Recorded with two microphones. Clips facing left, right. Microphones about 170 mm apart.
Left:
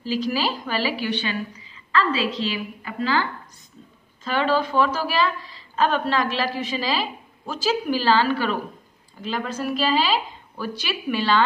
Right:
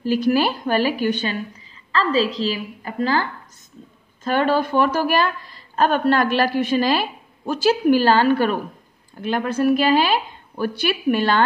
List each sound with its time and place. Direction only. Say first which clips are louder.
0.0 s a woman's voice: right 6 dB; 55° right (ahead or behind)